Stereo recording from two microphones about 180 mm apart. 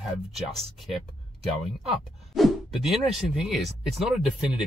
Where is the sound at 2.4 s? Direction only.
Centre (ahead or behind).